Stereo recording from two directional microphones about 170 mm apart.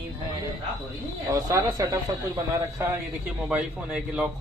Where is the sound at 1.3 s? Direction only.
20° right (ahead or behind).